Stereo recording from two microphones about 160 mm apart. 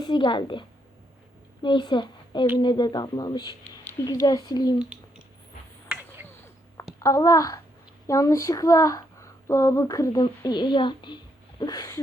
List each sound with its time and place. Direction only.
0.0 s a woman's voice: 30° left (ahead or behind)
1.6 s a woman's voice: 30° left (ahead or behind)
4.8 s a sound: 5° right (ahead or behind)
7.0 s a child's voice: 20° left (ahead or behind)